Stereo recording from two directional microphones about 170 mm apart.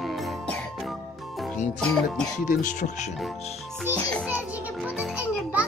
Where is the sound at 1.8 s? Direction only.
5° left (ahead or behind).